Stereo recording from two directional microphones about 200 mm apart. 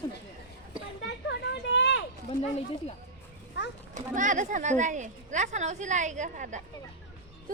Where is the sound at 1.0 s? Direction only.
60° left (ahead or behind).